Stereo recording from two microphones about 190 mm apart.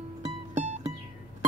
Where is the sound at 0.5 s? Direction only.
40° right (ahead or behind).